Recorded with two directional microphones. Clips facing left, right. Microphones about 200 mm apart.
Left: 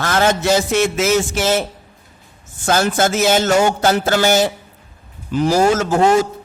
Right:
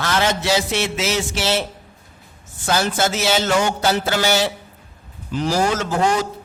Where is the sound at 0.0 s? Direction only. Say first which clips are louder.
Left 4 dB; 50° left (ahead or behind).